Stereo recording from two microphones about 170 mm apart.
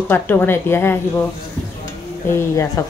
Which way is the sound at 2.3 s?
15° left (ahead or behind).